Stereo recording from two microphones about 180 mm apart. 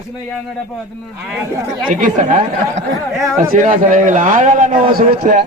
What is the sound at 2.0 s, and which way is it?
A man's voice, 40° right (ahead or behind).